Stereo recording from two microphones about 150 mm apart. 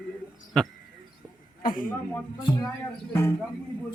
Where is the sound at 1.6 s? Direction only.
70° left (ahead or behind).